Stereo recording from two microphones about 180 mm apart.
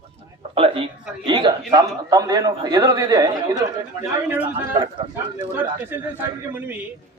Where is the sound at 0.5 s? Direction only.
30° right (ahead or behind).